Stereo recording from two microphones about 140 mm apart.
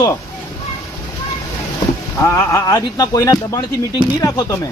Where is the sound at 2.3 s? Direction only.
20° left (ahead or behind).